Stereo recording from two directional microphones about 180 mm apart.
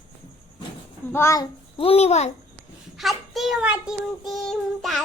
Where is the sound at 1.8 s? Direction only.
35° left (ahead or behind).